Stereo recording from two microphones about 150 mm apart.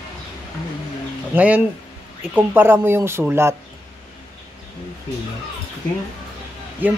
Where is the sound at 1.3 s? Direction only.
10° right (ahead or behind).